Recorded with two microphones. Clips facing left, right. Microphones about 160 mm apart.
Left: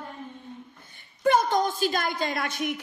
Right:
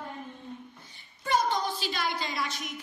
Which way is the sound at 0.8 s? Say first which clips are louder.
Left 12 dB; 55° left (ahead or behind).